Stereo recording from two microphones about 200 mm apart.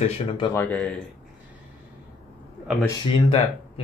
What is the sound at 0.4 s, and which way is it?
Speech, 10° left (ahead or behind).